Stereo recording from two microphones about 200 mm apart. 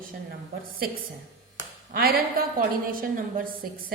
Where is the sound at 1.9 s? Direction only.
50° right (ahead or behind).